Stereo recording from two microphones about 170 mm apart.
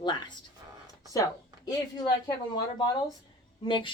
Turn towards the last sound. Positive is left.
turn(degrees=30)  # may be behind; listen again after turning